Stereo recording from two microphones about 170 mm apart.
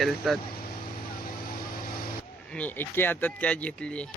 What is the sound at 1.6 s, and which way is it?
Vehicle, 60° left (ahead or behind).